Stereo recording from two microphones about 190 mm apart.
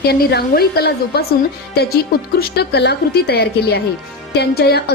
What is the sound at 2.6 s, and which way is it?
A woman's voice, 60° left (ahead or behind).